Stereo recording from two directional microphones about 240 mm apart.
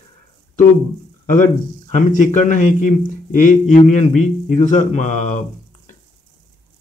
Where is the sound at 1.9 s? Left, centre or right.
Left.